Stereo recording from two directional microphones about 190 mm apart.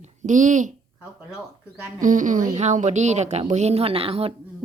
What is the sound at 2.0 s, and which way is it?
Speech, 45° right (ahead or behind).